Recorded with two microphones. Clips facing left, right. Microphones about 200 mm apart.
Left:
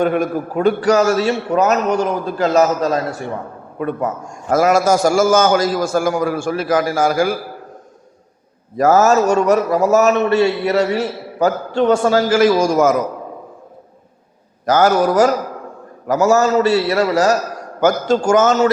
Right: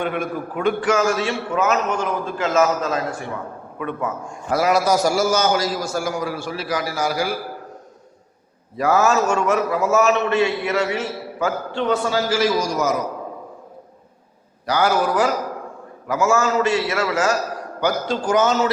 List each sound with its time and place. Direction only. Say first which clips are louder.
0.0 s a man's voice: left 7 dB; 40° left (ahead or behind)
8.7 s a man's voice: left 5 dB; 45° left (ahead or behind)
14.7 s a man's voice: left 6 dB; 45° left (ahead or behind)